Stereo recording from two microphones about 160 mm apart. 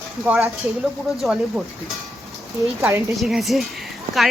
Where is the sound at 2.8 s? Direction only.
15° right (ahead or behind).